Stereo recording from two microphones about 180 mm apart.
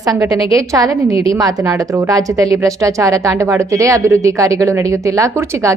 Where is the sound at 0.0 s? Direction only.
20° right (ahead or behind).